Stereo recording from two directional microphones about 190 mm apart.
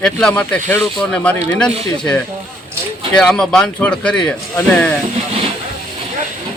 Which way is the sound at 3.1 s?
5° left (ahead or behind).